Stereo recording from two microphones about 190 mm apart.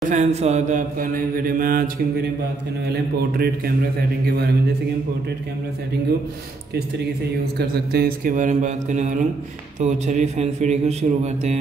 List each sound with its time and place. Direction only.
0.1 s mantra: 35° right (ahead or behind)
2.9 s speech: 55° right (ahead or behind)
7.5 s speech: 55° right (ahead or behind); by 9.2 s 40° right (ahead or behind)
9.8 s mantra: 40° right (ahead or behind)